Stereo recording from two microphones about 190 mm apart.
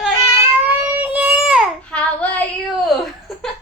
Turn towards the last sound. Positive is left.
turn(degrees=0)  # may be behind; listen again after turning